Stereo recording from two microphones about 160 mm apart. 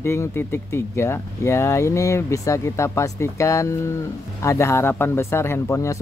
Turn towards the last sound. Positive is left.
turn(degrees=20)  # may be behind; listen again after turning